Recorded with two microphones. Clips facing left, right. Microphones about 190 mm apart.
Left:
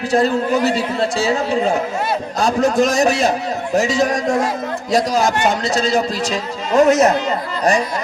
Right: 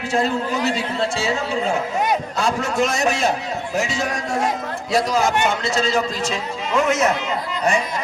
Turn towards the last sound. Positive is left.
turn(degrees=35)  # may be behind; listen again after turning